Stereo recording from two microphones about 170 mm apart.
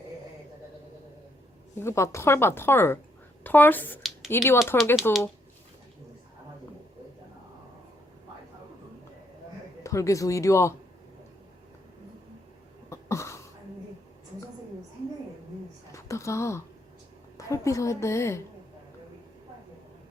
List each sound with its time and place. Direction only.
1.8 s a woman's voice: 15° left (ahead or behind)
9.8 s speech: 20° left (ahead or behind)
12.9 s cough: 15° left (ahead or behind)
15.9 s a sound: 15° left (ahead or behind)
17.3 s a woman's voice: 20° left (ahead or behind)